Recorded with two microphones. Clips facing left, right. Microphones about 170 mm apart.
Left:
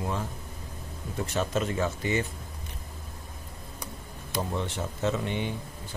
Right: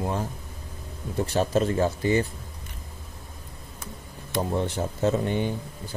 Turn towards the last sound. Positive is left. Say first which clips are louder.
# right 5 dB
turn(degrees=-40)  # may be behind; listen again after turning